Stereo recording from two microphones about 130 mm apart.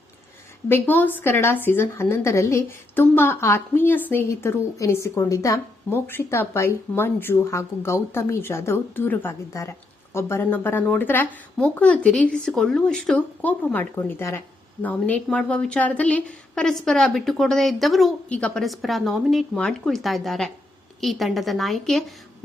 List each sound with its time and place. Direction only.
0.7 s speech: 15° left (ahead or behind)